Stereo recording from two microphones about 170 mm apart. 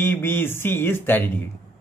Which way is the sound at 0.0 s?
15° left (ahead or behind).